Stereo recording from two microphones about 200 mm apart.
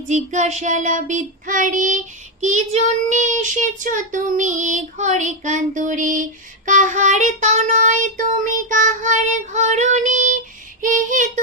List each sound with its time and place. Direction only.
0.1 s child singing: 35° right (ahead or behind)